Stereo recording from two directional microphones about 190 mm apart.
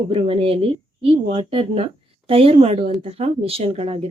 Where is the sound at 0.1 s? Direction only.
30° right (ahead or behind).